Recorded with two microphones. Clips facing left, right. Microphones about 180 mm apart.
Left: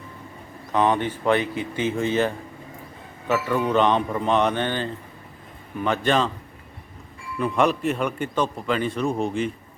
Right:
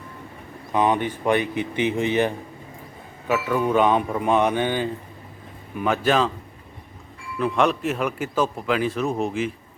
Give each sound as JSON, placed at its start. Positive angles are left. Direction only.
{"t": 0.7, "sound": "a man's voice", "side_deg": -15}
{"t": 7.3, "sound": "a man's voice", "side_deg": 0}